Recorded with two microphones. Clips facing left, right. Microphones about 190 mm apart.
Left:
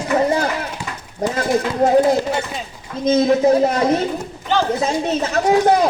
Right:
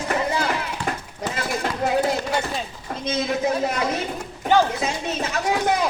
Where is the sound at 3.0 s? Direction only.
35° left (ahead or behind).